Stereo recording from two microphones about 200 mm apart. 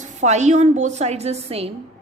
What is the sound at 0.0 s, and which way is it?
A woman's voice, 35° right (ahead or behind).